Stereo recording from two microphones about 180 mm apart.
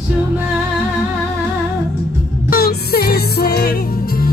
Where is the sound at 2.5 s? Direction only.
60° left (ahead or behind).